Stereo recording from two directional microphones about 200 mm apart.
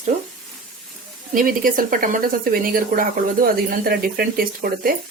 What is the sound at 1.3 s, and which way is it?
Speech, 45° right (ahead or behind).